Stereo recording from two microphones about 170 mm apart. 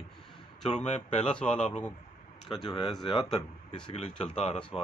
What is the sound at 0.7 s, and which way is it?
Speech, 40° left (ahead or behind).